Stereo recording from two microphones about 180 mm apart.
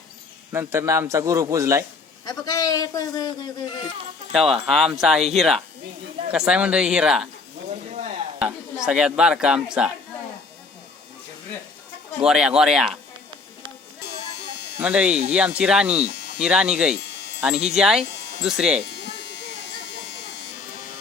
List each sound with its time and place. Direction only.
0.5 s a man's voice: 15° right (ahead or behind)
2.2 s a man's voice: 20° left (ahead or behind)
4.3 s speech: centre (ahead or behind)
8.4 s speech: 5° right (ahead or behind)
12.2 s speech: 5° right (ahead or behind)
14.8 s a man's voice: 5° right (ahead or behind)